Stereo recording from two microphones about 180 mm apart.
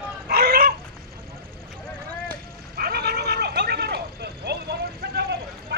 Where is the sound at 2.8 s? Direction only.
60° right (ahead or behind).